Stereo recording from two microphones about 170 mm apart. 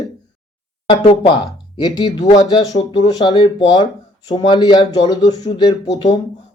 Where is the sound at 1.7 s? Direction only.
25° left (ahead or behind).